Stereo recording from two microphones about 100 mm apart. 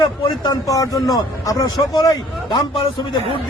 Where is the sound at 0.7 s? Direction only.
35° left (ahead or behind).